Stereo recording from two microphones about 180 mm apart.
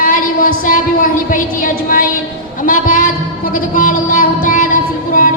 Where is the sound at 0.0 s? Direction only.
50° left (ahead or behind).